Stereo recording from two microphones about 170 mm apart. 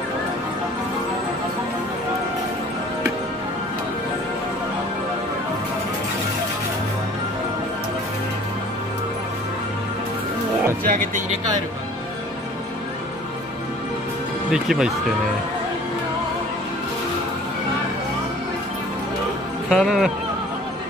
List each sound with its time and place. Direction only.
10.8 s speech: 55° right (ahead or behind)
14.5 s speech: 5° right (ahead or behind)
19.7 s speech: centre (ahead or behind)